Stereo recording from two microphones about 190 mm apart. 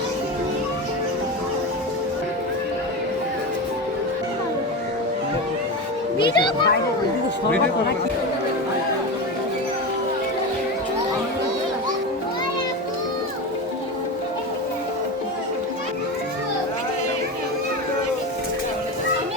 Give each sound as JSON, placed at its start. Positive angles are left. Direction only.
{"t": 6.1, "sound": "a child's voice", "side_deg": 25}